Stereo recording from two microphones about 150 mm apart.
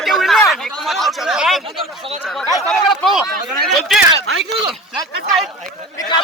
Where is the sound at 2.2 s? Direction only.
Centre (ahead or behind).